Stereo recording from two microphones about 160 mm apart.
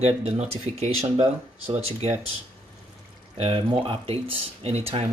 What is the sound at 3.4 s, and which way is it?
Speech, 35° right (ahead or behind).